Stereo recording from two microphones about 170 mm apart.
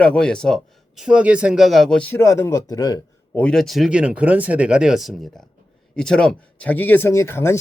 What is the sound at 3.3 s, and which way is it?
Speech, 5° left (ahead or behind).